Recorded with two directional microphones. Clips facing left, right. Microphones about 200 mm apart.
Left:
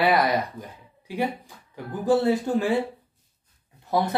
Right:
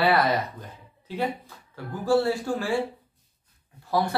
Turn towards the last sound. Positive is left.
turn(degrees=20)  # may be behind; listen again after turning